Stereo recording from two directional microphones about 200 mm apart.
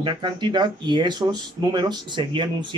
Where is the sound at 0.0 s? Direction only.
25° right (ahead or behind).